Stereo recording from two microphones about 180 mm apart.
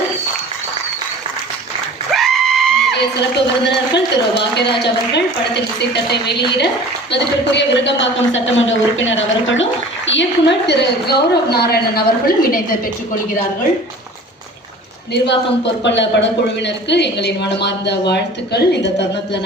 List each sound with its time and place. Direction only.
2.1 s music: centre (ahead or behind)
2.9 s a man's voice: 70° left (ahead or behind); by 12.5 s 55° left (ahead or behind)
15.1 s a man's voice: 70° left (ahead or behind)